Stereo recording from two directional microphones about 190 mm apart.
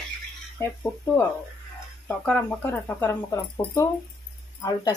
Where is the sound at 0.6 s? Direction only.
10° left (ahead or behind).